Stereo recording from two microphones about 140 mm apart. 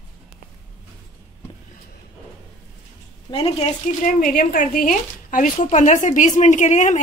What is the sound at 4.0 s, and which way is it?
Speech, 70° left (ahead or behind).